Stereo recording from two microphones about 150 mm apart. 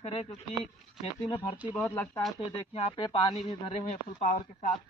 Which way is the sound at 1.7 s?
15° left (ahead or behind).